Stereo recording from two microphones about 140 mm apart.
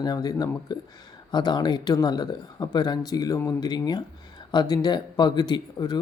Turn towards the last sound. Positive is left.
turn(degrees=30)  # may be behind; listen again after turning